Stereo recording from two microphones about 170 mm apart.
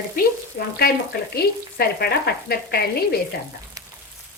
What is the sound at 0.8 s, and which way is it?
Speech, 70° left (ahead or behind).